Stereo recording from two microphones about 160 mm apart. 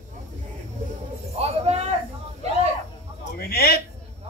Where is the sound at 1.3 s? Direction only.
40° right (ahead or behind).